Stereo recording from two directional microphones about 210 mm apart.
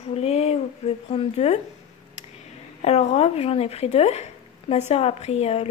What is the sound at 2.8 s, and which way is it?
Speech, 30° left (ahead or behind).